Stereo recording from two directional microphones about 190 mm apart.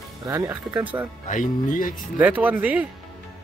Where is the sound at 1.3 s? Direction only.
45° left (ahead or behind).